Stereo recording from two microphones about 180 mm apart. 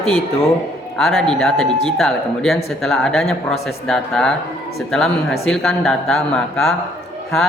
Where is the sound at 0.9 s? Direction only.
Centre (ahead or behind).